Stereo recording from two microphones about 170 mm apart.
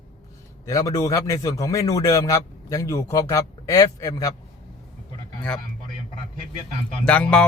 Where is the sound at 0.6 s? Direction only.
20° left (ahead or behind).